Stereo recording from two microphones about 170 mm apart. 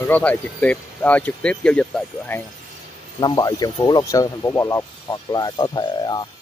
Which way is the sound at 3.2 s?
25° left (ahead or behind).